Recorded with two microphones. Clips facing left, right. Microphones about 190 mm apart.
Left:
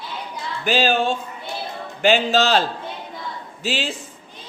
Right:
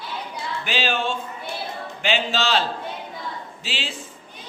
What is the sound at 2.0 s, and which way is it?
Music, 45° left (ahead or behind).